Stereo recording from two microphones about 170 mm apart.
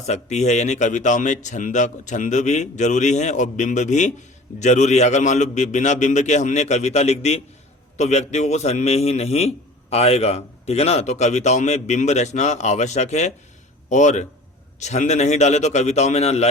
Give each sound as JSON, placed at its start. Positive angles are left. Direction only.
{"t": 0.0, "sound": "a man's voice", "side_deg": 40}